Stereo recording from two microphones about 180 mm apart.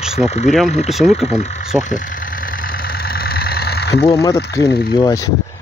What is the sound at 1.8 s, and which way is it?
Engine, 45° left (ahead or behind).